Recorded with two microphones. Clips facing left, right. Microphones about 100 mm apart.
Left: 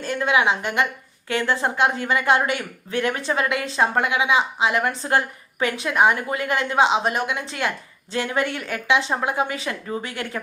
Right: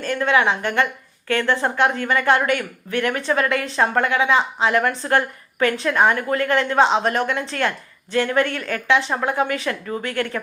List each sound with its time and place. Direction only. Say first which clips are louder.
0.0 s a woman's voice: right 2 dB; 20° left (ahead or behind)